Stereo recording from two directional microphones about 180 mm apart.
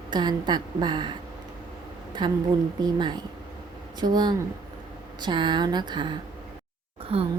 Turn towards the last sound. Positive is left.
turn(degrees=-35)  # may be behind; listen again after turning